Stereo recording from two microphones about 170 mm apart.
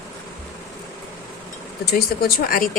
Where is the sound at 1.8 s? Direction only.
65° left (ahead or behind).